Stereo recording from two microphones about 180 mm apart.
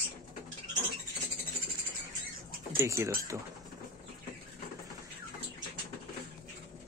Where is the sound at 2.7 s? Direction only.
15° right (ahead or behind).